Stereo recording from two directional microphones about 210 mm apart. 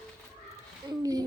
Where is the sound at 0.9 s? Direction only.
20° right (ahead or behind).